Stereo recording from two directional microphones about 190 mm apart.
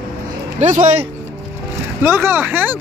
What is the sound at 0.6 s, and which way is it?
Speech, 35° right (ahead or behind).